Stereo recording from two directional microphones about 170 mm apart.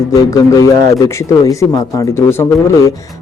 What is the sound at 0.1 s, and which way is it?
Speech, 20° left (ahead or behind).